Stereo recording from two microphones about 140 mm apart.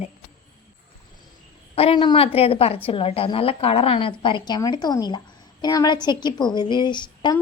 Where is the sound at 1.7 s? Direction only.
40° left (ahead or behind).